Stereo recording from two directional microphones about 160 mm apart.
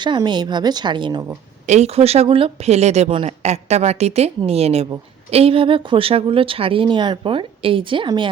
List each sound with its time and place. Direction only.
0.0 s a woman's voice: 30° right (ahead or behind)
1.6 s speech: 45° right (ahead or behind)